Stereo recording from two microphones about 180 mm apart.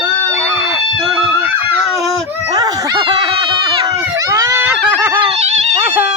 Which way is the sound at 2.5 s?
20° right (ahead or behind).